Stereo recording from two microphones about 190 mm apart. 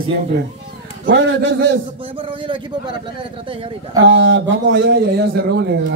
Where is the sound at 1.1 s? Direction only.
70° right (ahead or behind).